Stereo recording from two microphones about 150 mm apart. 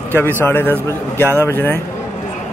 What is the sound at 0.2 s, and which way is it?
A man's voice, 15° left (ahead or behind).